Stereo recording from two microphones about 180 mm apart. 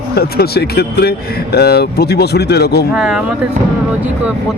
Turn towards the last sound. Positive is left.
turn(degrees=-5)  # may be behind; listen again after turning